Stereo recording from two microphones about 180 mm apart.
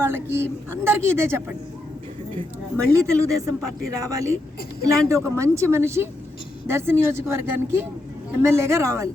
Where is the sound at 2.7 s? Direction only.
15° right (ahead or behind).